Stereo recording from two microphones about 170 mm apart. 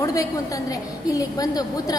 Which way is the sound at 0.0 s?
20° left (ahead or behind).